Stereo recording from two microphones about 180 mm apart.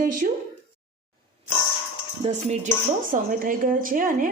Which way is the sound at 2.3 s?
40° right (ahead or behind).